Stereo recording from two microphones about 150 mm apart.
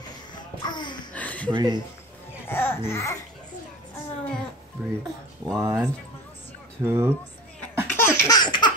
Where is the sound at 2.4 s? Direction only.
15° left (ahead or behind).